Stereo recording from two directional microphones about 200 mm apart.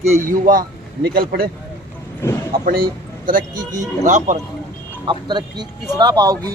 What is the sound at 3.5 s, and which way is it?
Speech, 20° right (ahead or behind).